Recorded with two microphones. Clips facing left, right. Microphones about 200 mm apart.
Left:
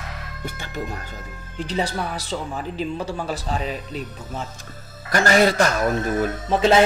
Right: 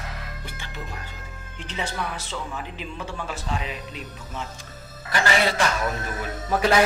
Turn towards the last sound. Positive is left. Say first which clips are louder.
# left 4 dB
turn(degrees=25)  # may be behind; listen again after turning